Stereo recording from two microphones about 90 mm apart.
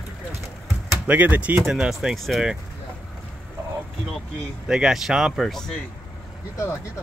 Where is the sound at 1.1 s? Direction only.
20° right (ahead or behind).